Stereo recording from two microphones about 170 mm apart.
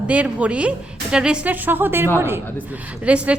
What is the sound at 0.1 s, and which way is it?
A woman's voice, 5° right (ahead or behind).